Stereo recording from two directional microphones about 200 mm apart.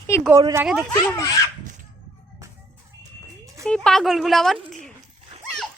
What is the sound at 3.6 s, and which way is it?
Speech, centre (ahead or behind).